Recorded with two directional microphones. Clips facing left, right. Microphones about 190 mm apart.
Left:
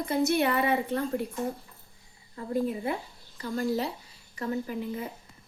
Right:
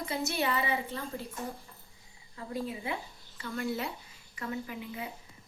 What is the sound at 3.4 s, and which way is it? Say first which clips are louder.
Speech: left 5 dB; 35° left (ahead or behind).